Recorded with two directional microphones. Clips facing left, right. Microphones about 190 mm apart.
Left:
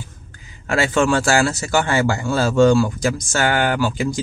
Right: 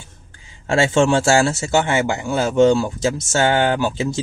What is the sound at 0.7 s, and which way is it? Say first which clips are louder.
Speech: right 2 dB; 25° right (ahead or behind).